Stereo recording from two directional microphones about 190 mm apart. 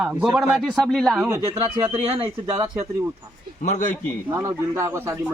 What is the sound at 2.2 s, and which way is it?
Speech, 10° right (ahead or behind).